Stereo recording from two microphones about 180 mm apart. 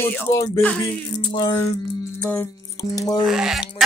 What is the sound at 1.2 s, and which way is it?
Music, 25° left (ahead or behind).